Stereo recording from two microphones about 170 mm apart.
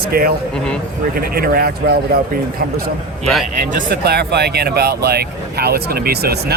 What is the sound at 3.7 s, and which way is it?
Speech, 65° right (ahead or behind).